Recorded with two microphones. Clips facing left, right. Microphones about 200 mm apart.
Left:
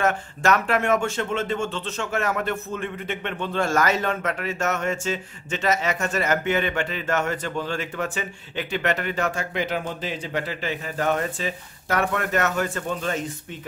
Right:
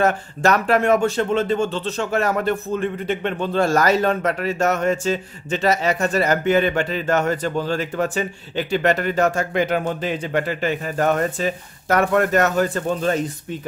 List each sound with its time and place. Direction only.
0.0 s speech: 35° right (ahead or behind)